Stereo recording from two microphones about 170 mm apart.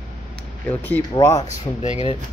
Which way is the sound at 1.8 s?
40° left (ahead or behind).